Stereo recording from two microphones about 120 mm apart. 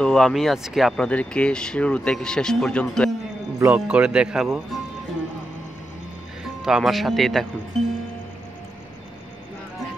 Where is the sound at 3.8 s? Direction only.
10° right (ahead or behind).